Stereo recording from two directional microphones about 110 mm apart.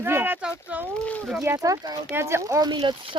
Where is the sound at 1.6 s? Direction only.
30° right (ahead or behind).